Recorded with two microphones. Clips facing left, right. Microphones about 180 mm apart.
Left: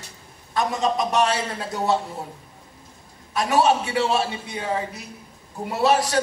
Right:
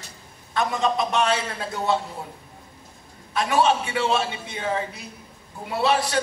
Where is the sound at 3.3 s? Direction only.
40° left (ahead or behind).